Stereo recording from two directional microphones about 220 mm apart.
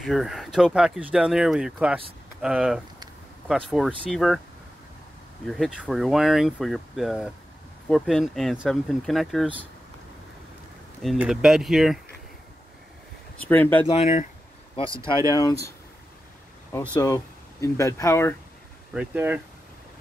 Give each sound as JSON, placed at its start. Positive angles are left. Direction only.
{"t": 0.0, "sound": "speech", "side_deg": 0}
{"t": 5.5, "sound": "speech", "side_deg": 0}
{"t": 11.0, "sound": "speech", "side_deg": 0}
{"t": 13.5, "sound": "speech", "side_deg": 10}
{"t": 13.9, "sound": "speech", "side_deg": 30}
{"t": 16.9, "sound": "speech", "side_deg": 15}
{"t": 18.9, "sound": "speech", "side_deg": -10}